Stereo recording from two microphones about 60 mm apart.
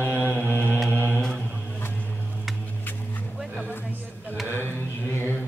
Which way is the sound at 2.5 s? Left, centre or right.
Centre.